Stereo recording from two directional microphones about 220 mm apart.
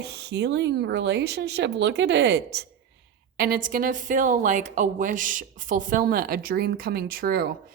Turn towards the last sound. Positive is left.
turn(degrees=-45)  # may be behind; listen again after turning